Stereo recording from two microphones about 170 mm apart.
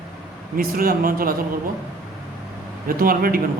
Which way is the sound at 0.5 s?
60° right (ahead or behind).